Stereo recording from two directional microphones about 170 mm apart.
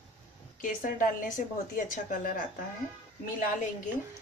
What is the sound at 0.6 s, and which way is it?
Speech, 50° left (ahead or behind).